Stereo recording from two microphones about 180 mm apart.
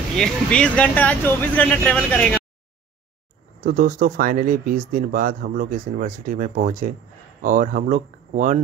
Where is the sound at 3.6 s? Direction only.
50° right (ahead or behind).